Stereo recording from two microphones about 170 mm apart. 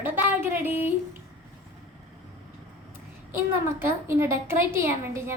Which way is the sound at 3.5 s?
15° right (ahead or behind).